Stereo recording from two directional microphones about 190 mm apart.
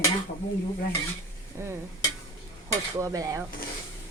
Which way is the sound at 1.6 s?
15° right (ahead or behind).